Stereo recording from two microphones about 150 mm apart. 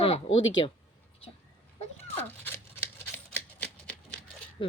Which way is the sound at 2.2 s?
15° left (ahead or behind).